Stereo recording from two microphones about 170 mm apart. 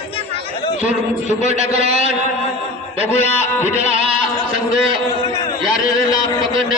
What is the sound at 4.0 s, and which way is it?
Sheep, 35° right (ahead or behind).